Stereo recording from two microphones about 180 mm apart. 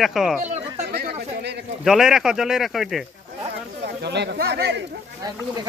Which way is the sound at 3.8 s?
70° right (ahead or behind).